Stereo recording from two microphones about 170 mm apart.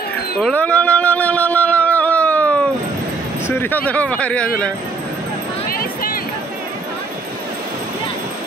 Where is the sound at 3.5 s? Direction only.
10° left (ahead or behind).